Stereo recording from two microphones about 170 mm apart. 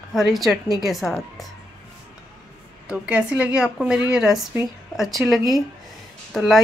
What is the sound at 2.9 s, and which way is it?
Speech, 5° right (ahead or behind).